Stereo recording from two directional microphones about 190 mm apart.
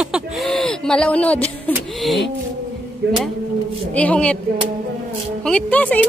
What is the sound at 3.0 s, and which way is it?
Speech, 70° right (ahead or behind).